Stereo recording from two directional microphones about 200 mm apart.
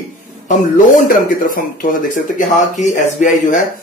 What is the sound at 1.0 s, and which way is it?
Speech, 45° left (ahead or behind).